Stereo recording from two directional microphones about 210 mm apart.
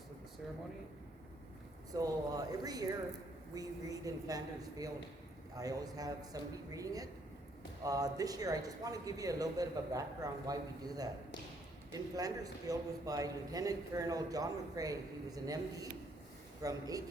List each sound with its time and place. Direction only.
1.9 s a man's voice: 15° right (ahead or behind)